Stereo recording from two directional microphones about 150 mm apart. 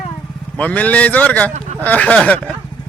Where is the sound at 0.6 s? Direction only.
10° left (ahead or behind).